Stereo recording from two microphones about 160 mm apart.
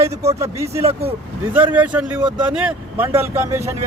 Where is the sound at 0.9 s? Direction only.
40° right (ahead or behind).